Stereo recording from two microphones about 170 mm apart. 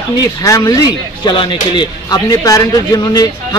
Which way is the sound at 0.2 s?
20° left (ahead or behind).